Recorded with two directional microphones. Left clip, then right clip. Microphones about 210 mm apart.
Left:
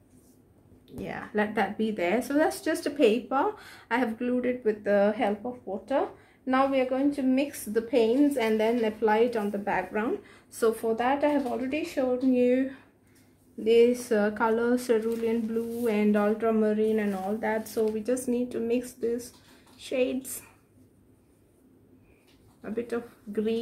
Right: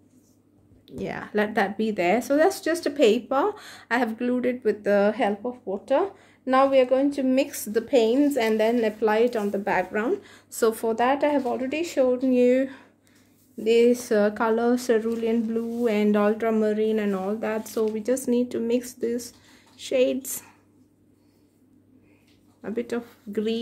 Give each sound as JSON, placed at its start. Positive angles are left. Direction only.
{"t": 0.8, "sound": "speech", "side_deg": -50}
{"t": 22.6, "sound": "speech", "side_deg": -45}